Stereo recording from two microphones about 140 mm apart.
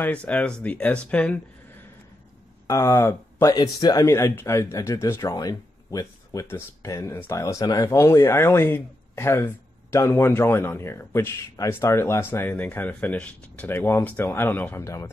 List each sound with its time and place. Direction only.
0.0 s speech: 10° left (ahead or behind)
2.6 s speech: 20° left (ahead or behind)